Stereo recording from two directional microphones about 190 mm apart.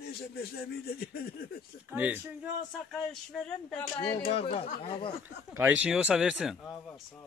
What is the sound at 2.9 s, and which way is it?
Speech, 5° left (ahead or behind).